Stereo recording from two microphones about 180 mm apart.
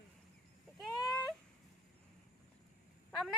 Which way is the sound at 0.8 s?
Centre (ahead or behind).